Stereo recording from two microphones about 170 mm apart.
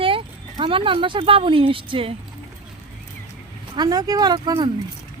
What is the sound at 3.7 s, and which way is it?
Speech, 25° right (ahead or behind).